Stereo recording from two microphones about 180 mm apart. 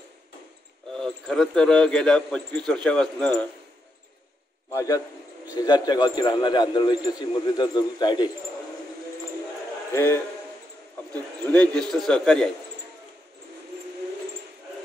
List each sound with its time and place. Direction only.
0.9 s a man's voice: centre (ahead or behind)
4.7 s speech: 20° left (ahead or behind)
9.9 s a man's voice: 15° left (ahead or behind)
11.4 s a man's voice: 5° left (ahead or behind)